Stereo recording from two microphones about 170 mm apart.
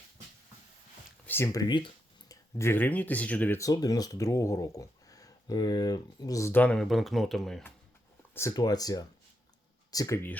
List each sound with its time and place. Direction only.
1.3 s speech: 15° left (ahead or behind)
1.6 s speech: 30° left (ahead or behind)
2.3 s speech: 15° left (ahead or behind)
8.3 s speech: 15° left (ahead or behind)